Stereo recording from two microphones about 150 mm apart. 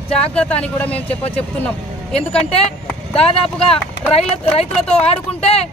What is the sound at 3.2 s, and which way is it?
Speech, 40° left (ahead or behind).